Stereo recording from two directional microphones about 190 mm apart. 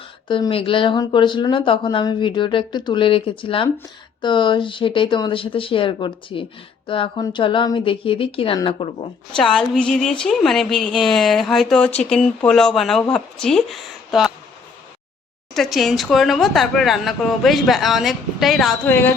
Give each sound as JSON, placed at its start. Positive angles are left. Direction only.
{"t": 0.3, "sound": "speech", "side_deg": 25}
{"t": 9.3, "sound": "speech", "side_deg": 5}
{"t": 15.5, "sound": "speech", "side_deg": 0}